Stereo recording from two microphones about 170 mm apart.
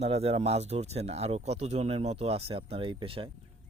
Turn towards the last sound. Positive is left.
turn(degrees=-30)  # may be behind; listen again after turning